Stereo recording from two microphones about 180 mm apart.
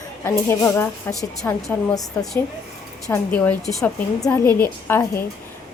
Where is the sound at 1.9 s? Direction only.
20° left (ahead or behind).